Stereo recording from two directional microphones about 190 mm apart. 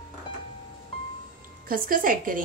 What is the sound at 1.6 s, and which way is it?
Speech, 50° right (ahead or behind).